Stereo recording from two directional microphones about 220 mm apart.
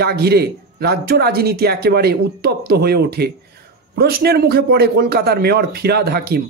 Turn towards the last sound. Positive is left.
turn(degrees=-45)  # may be behind; listen again after turning